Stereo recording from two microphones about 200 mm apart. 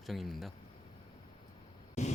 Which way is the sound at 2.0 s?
35° left (ahead or behind).